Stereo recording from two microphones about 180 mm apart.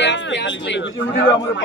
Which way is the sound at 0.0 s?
75° left (ahead or behind).